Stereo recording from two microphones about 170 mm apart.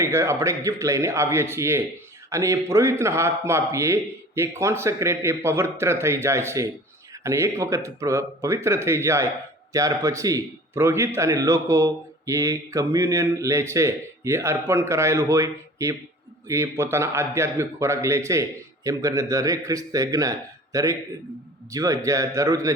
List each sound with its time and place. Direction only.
0.0 s a man's voice: 15° right (ahead or behind)